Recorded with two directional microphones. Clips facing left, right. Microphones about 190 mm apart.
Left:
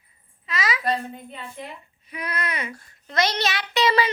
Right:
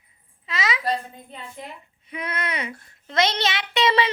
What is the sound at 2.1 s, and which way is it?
A child's voice, 25° right (ahead or behind).